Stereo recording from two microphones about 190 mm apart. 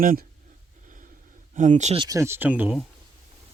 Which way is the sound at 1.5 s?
40° right (ahead or behind).